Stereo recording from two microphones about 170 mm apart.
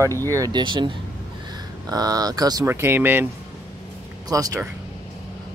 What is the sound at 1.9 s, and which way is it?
Speech, 20° right (ahead or behind).